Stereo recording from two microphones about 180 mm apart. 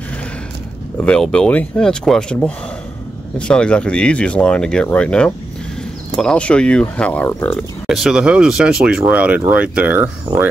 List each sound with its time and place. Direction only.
0.9 s speech: 5° left (ahead or behind); by 10.5 s 10° right (ahead or behind)